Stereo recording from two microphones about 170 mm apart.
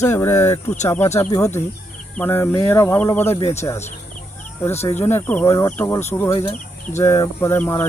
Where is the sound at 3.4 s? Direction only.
40° left (ahead or behind).